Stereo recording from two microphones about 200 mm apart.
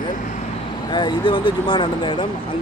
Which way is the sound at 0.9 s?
25° left (ahead or behind).